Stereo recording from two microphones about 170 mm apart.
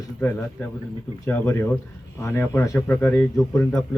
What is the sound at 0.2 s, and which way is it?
Speech, 15° left (ahead or behind).